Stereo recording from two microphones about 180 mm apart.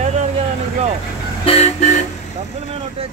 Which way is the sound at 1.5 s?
40° left (ahead or behind).